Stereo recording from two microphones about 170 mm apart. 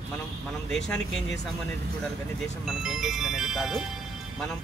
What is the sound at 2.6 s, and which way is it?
Speech, centre (ahead or behind).